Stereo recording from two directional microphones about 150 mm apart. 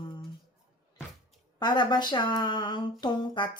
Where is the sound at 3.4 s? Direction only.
30° left (ahead or behind).